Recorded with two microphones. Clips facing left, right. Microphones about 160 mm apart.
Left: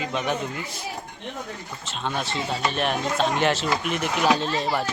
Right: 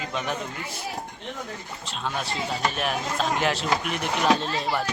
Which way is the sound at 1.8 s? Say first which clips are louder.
Left 2 dB; centre (ahead or behind).